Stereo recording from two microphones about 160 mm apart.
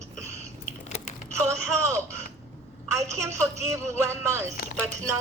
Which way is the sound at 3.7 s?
15° right (ahead or behind).